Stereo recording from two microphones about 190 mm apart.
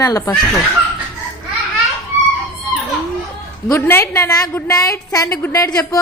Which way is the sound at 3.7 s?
10° left (ahead or behind).